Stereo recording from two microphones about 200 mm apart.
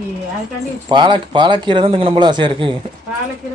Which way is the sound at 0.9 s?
25° right (ahead or behind).